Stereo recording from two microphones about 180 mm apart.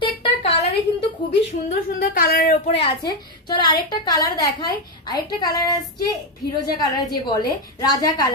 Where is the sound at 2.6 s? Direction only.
30° left (ahead or behind).